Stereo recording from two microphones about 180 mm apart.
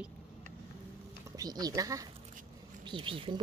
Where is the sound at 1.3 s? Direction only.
20° right (ahead or behind).